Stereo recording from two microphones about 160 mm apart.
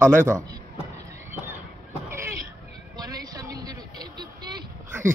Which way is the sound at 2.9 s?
25° right (ahead or behind).